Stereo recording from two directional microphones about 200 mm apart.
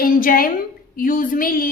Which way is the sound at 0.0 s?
45° left (ahead or behind).